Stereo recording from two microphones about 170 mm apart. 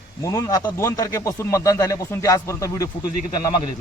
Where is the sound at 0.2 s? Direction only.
20° left (ahead or behind).